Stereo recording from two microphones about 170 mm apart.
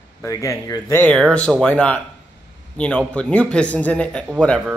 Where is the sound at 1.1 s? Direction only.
5° left (ahead or behind).